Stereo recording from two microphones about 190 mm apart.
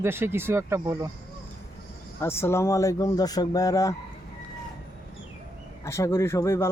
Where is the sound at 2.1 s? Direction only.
15° left (ahead or behind).